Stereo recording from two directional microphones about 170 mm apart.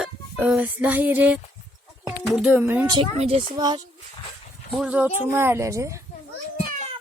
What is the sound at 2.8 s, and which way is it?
Speech, 25° right (ahead or behind).